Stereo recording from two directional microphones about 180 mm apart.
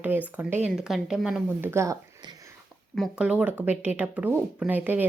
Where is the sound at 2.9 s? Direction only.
Centre (ahead or behind).